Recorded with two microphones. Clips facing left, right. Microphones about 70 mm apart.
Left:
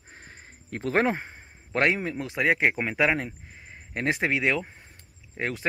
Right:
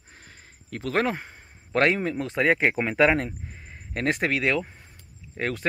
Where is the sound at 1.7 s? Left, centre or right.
Centre.